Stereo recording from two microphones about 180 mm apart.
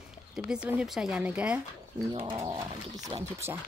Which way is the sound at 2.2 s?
30° right (ahead or behind).